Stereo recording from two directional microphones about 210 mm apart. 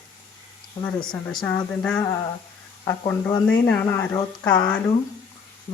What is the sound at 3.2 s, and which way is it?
Speech, 10° left (ahead or behind).